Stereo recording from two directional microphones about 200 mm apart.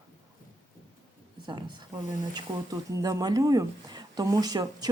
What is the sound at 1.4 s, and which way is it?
Speech, 20° right (ahead or behind).